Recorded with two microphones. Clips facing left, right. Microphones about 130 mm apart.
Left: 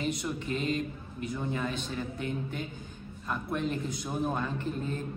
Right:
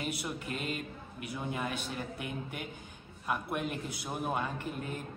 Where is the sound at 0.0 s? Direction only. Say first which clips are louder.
Left 4 dB; 5° right (ahead or behind).